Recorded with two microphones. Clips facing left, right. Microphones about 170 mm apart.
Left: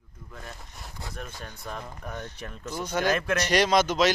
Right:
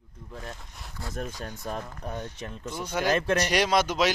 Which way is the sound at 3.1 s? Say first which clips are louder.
Right 2 dB; 35° right (ahead or behind).